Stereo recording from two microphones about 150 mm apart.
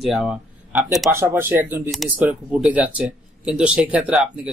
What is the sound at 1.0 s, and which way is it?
Speech, 15° right (ahead or behind).